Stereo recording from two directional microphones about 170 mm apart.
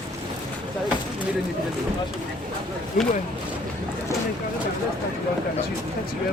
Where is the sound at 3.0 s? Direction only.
55° left (ahead or behind).